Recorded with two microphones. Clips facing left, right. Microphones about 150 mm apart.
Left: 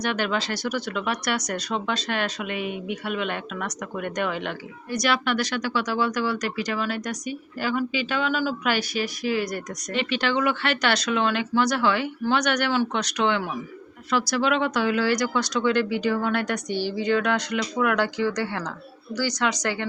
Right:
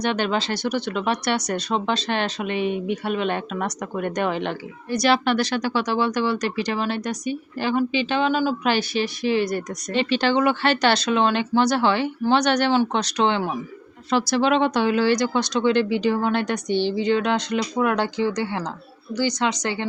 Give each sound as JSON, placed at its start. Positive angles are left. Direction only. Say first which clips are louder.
{"t": 0.0, "sound": "speech", "louder": "right 3 dB", "side_deg": -25}